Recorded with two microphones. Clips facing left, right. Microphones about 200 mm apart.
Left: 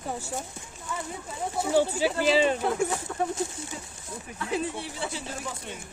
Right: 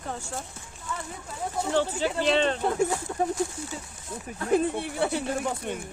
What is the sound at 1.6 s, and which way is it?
Speech, 10° left (ahead or behind).